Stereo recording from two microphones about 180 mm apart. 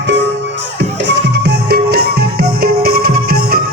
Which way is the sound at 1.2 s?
70° right (ahead or behind).